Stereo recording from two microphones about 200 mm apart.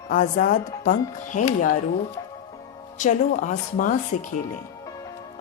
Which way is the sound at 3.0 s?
40° left (ahead or behind).